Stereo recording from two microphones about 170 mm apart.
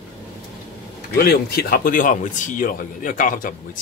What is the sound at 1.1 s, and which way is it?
Speech, 65° left (ahead or behind).